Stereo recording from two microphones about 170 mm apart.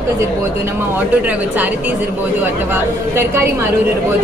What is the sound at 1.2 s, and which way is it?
A woman's voice, 10° right (ahead or behind).